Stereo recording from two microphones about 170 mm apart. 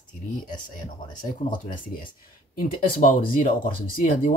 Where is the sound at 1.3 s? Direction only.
50° left (ahead or behind).